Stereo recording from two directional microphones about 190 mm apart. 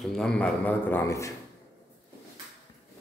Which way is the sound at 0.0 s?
5° left (ahead or behind).